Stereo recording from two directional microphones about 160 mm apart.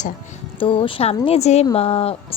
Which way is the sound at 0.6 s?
35° left (ahead or behind).